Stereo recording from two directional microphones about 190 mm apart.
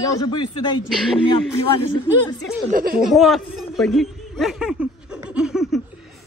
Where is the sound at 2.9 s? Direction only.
Centre (ahead or behind).